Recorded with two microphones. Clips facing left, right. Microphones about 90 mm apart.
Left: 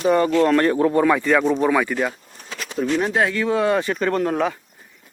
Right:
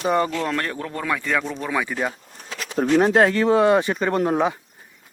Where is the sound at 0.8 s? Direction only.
20° left (ahead or behind).